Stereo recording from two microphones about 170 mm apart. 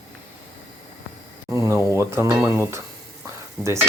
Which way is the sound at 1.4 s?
15° right (ahead or behind).